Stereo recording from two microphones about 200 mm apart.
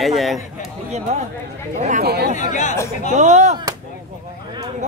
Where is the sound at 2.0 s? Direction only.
55° right (ahead or behind).